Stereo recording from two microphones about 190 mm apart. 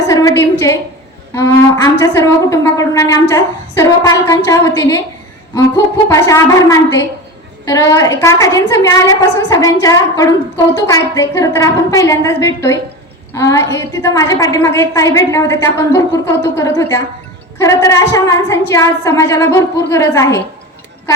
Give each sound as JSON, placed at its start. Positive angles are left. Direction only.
{"t": 0.1, "sound": "a sound", "side_deg": 15}
{"t": 1.3, "sound": "a woman's voice", "side_deg": 15}
{"t": 6.1, "sound": "a woman's voice", "side_deg": 15}